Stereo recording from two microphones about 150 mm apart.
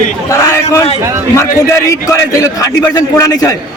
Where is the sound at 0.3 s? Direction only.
20° left (ahead or behind).